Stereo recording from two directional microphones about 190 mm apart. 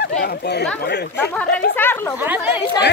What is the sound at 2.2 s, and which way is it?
Speech, 10° right (ahead or behind).